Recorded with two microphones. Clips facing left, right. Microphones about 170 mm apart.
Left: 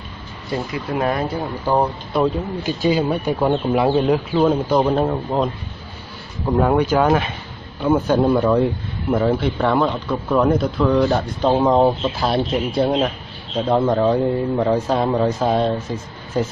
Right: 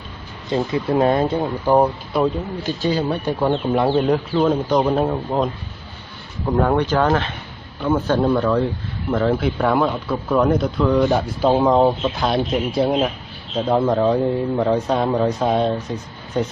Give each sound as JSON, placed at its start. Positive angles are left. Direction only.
{"t": 0.5, "sound": "speech", "side_deg": -25}
{"t": 1.7, "sound": "speech", "side_deg": -15}
{"t": 2.1, "sound": "speech", "side_deg": 0}
{"t": 2.6, "sound": "speech", "side_deg": 10}
{"t": 9.1, "sound": "speech", "side_deg": 5}